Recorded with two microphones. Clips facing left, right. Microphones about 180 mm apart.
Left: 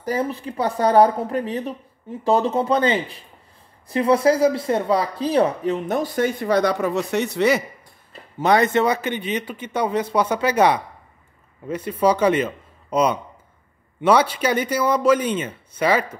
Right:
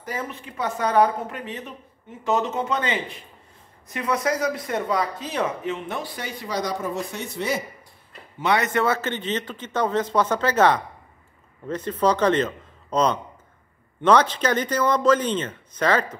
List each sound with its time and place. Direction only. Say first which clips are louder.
0.0 s speech: left 8 dB; 35° left (ahead or behind); by 7.6 s 75° left (ahead or behind)
8.4 s speech: left 5 dB; 35° left (ahead or behind)
8.7 s speech: left 3 dB; 15° left (ahead or behind)